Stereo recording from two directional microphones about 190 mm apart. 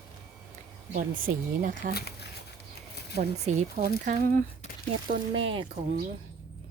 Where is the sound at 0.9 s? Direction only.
45° right (ahead or behind).